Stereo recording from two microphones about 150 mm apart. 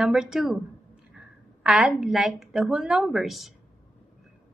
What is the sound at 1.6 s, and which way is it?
A woman's voice, 5° right (ahead or behind).